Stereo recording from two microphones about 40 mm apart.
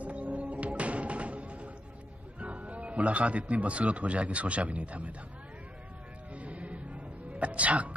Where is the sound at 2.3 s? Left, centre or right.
Right.